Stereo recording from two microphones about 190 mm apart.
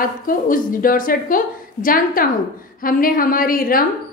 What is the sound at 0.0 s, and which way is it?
A woman's voice, 45° left (ahead or behind).